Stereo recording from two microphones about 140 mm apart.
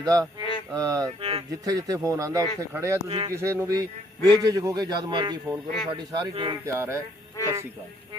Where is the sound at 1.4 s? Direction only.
25° right (ahead or behind).